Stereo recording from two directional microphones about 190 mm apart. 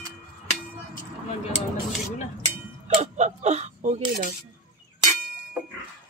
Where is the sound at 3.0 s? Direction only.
35° right (ahead or behind).